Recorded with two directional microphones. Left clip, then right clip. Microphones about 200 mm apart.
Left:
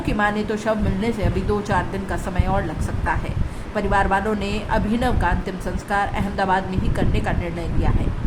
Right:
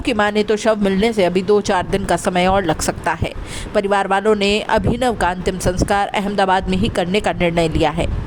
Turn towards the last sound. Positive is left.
turn(degrees=-50)  # may be behind; listen again after turning